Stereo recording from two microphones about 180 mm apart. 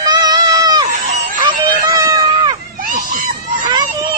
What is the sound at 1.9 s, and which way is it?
Run, 20° right (ahead or behind).